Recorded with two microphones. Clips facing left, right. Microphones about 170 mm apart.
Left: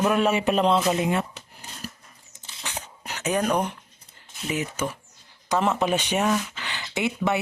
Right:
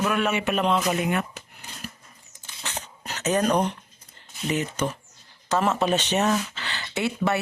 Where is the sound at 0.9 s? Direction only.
25° left (ahead or behind).